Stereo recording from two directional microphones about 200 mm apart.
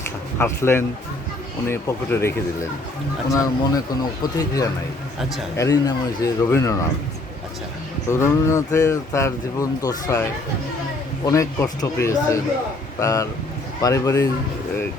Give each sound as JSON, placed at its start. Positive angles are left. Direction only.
{"t": 0.3, "sound": "speech", "side_deg": 10}
{"t": 8.0, "sound": "speech", "side_deg": 15}
{"t": 11.3, "sound": "speech", "side_deg": 15}